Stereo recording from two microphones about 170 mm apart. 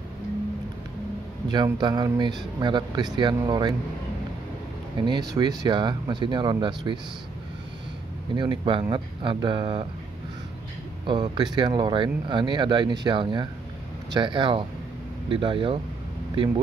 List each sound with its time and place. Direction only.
1.5 s speech: 25° right (ahead or behind)
4.9 s speech: 25° right (ahead or behind)
8.4 s speech: 30° right (ahead or behind)
11.1 s speech: 25° right (ahead or behind)